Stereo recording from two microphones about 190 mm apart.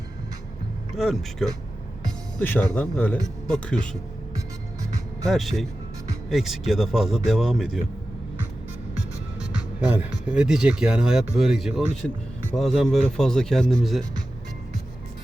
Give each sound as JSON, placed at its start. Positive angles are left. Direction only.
{"t": 0.9, "sound": "speech", "side_deg": 0}
{"t": 2.0, "sound": "music", "side_deg": 10}
{"t": 2.7, "sound": "a man's voice", "side_deg": 10}
{"t": 4.4, "sound": "music", "side_deg": -15}
{"t": 5.3, "sound": "speech", "side_deg": 0}
{"t": 9.8, "sound": "speech", "side_deg": -10}